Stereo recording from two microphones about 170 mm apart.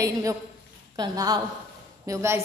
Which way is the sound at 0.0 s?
20° right (ahead or behind).